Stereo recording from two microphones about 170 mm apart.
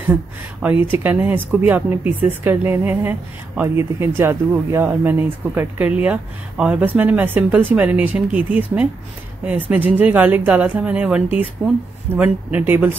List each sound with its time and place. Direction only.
0.0 s speech: 10° right (ahead or behind)